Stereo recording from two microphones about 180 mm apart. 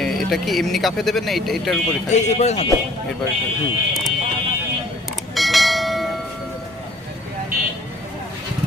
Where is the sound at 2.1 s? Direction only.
40° left (ahead or behind).